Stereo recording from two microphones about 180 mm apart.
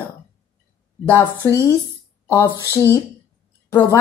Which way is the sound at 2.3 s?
15° left (ahead or behind).